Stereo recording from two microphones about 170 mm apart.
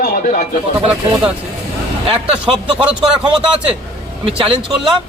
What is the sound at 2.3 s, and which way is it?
Speech, 5° right (ahead or behind).